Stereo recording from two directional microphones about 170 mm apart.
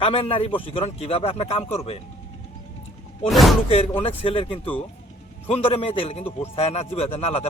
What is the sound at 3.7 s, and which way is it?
Speech, 35° left (ahead or behind).